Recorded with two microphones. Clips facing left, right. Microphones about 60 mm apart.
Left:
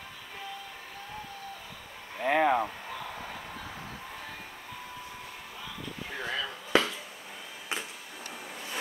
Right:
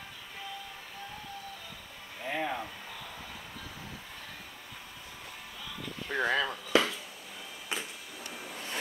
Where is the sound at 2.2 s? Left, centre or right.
Left.